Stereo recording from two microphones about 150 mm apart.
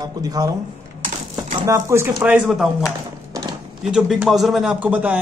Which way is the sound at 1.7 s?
20° right (ahead or behind).